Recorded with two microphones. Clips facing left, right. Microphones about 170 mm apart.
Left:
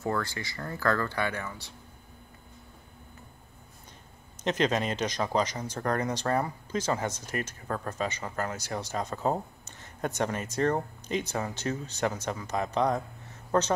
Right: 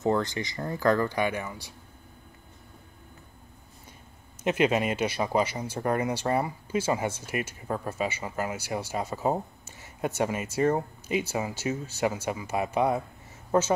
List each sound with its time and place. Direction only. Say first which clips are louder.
0.0 s speech: right 5 dB; 20° right (ahead or behind)
4.4 s speech: right 3 dB; 10° right (ahead or behind)